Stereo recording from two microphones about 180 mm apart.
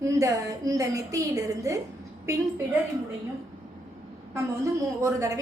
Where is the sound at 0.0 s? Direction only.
20° right (ahead or behind).